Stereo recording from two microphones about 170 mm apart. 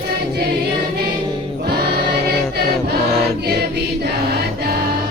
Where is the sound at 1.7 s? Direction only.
70° right (ahead or behind).